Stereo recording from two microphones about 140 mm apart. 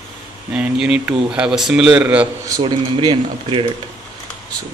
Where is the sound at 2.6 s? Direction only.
35° right (ahead or behind).